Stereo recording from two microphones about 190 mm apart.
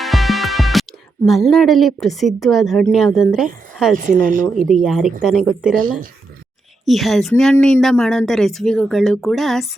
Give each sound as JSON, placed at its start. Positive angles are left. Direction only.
{"t": 0.0, "sound": "a woman's voice", "side_deg": 0}
{"t": 3.9, "sound": "speech", "side_deg": -45}
{"t": 4.7, "sound": "a woman's voice", "side_deg": 0}